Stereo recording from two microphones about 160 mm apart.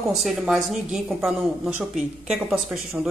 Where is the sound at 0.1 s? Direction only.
Centre (ahead or behind).